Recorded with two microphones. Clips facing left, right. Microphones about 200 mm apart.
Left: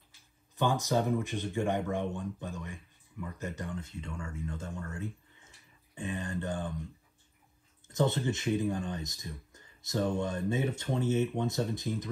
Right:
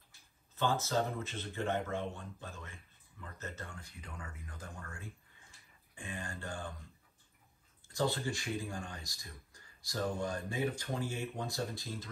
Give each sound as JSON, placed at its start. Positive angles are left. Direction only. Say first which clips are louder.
{"t": 0.6, "sound": "speech", "louder": "left 4 dB", "side_deg": 15}
{"t": 7.9, "sound": "speech", "louder": "left 5 dB", "side_deg": 20}